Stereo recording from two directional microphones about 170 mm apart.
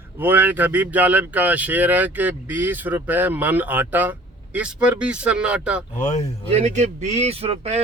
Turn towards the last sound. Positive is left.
turn(degrees=-40)  # may be behind; listen again after turning